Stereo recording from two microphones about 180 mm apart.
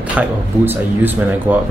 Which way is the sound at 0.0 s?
5° right (ahead or behind).